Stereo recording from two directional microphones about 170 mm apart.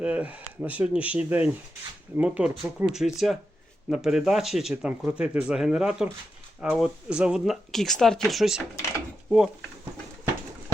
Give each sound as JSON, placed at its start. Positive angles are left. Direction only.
{"t": 0.0, "sound": "speech", "side_deg": -5}